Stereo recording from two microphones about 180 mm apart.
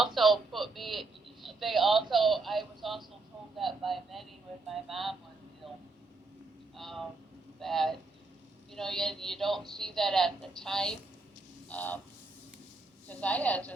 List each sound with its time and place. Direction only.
0.0 s a sound: centre (ahead or behind)
3.6 s a woman's voice: centre (ahead or behind)
6.7 s a woman's voice: centre (ahead or behind)
13.1 s a woman's voice: 5° left (ahead or behind)